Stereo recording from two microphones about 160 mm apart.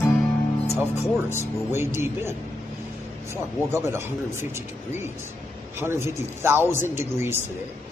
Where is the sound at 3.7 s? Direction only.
15° right (ahead or behind).